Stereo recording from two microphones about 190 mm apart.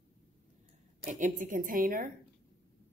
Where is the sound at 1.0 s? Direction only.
40° right (ahead or behind).